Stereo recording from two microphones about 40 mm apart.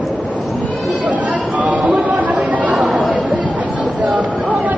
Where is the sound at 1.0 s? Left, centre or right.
Right.